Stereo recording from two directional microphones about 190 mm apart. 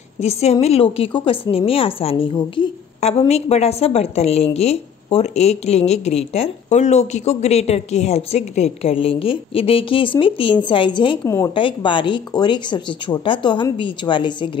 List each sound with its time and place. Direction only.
0.2 s speech: 35° left (ahead or behind)
11.2 s a woman's voice: 15° left (ahead or behind)
11.5 s speech: 25° left (ahead or behind)